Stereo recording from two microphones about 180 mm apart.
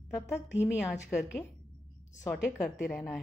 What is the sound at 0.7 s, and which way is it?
A woman's voice, centre (ahead or behind).